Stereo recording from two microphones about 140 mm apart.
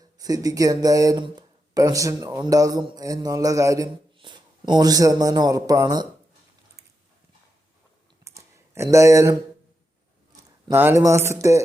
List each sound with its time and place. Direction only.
0.2 s a man's voice: 25° right (ahead or behind)
8.2 s a sound: 20° right (ahead or behind)
10.7 s speech: 15° right (ahead or behind)